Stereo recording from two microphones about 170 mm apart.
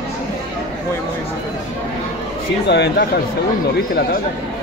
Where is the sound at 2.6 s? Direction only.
85° left.